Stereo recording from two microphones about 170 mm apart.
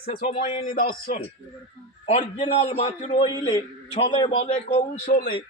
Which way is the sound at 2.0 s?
40° left (ahead or behind).